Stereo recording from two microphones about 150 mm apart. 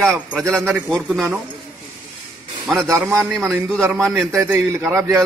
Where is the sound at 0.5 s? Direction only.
15° right (ahead or behind).